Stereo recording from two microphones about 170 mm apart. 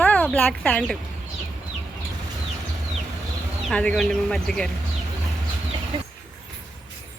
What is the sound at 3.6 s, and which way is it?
Speech, 5° left (ahead or behind).